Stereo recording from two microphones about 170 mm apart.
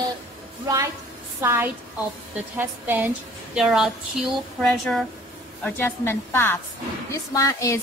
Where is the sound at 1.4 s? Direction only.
15° right (ahead or behind); by 7.8 s 20° left (ahead or behind).